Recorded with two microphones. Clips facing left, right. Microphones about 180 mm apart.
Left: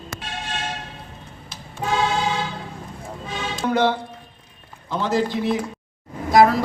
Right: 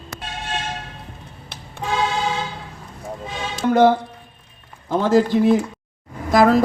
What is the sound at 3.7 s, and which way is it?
A man's voice, 45° right (ahead or behind).